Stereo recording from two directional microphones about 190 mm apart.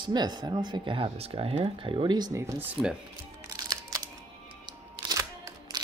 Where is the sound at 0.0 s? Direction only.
20° right (ahead or behind); by 3.0 s 5° right (ahead or behind).